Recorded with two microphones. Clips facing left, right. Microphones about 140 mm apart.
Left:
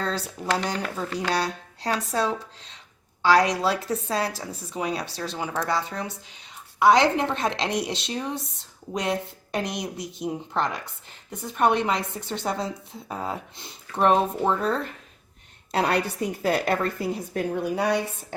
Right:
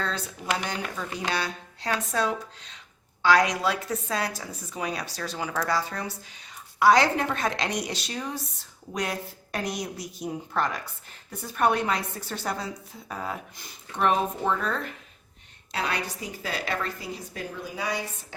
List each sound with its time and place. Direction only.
0.0 s a sound: 35° left (ahead or behind)
1.3 s a woman's voice: 35° left (ahead or behind)
15.7 s a woman's voice: 60° left (ahead or behind)